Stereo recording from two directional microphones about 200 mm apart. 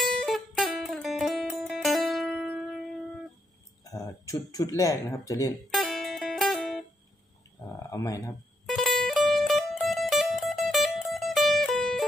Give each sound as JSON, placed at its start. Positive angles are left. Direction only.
{"t": 0.0, "sound": "music", "side_deg": 0}
{"t": 3.8, "sound": "speech", "side_deg": 15}
{"t": 5.7, "sound": "music", "side_deg": 0}
{"t": 7.9, "sound": "speech", "side_deg": 15}
{"t": 8.6, "sound": "music", "side_deg": 0}